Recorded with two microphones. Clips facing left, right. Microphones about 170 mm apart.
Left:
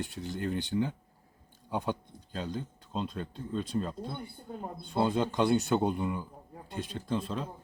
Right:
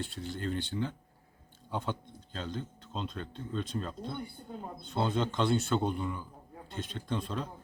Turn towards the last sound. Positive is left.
turn(degrees=5)  # may be behind; listen again after turning